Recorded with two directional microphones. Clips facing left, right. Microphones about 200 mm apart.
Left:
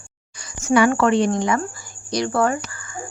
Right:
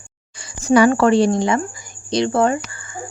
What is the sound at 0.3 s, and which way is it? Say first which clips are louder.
Speech: right 3 dB; 30° right (ahead or behind).